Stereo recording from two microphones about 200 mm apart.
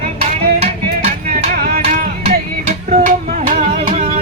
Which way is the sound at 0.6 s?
40° right (ahead or behind).